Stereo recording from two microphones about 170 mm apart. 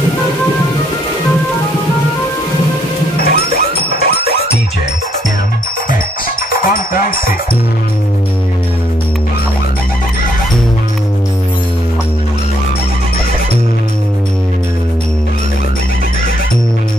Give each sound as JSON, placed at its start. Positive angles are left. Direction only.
{"t": 3.3, "sound": "music", "side_deg": 65}
{"t": 6.6, "sound": "cowbell", "side_deg": 55}